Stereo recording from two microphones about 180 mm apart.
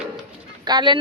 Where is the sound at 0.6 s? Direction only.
25° right (ahead or behind).